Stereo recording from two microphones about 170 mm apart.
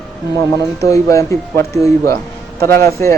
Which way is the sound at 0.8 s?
20° left (ahead or behind).